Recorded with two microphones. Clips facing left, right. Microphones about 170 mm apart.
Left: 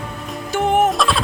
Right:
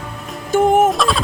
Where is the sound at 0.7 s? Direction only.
45° right (ahead or behind).